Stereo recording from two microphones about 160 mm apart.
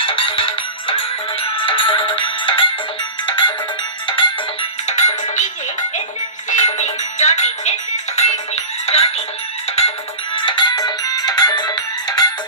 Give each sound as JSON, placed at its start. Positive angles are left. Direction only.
{"t": 0.0, "sound": "music", "side_deg": 35}
{"t": 4.9, "sound": "music", "side_deg": 45}
{"t": 6.5, "sound": "music", "side_deg": 50}